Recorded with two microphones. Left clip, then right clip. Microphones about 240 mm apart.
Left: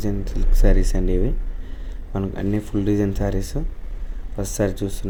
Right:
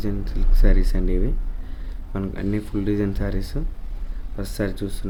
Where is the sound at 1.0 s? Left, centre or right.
Centre.